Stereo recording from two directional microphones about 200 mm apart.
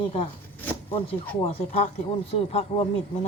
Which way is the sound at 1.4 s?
30° left (ahead or behind).